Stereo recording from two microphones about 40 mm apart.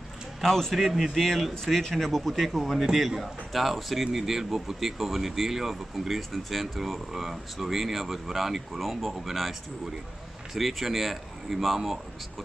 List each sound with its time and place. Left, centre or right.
0.4 s a man's voice: centre
0.7 s speech: centre